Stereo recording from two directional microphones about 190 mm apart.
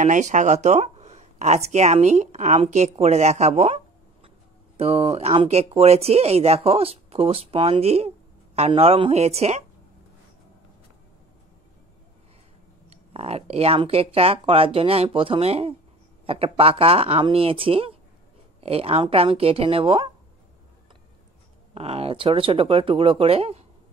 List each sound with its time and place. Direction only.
0.0 s speech: 40° right (ahead or behind)
12.9 s speech: 30° right (ahead or behind)
21.7 s speech: 30° right (ahead or behind)